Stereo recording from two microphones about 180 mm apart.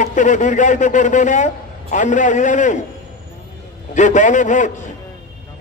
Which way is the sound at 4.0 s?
45° left (ahead or behind).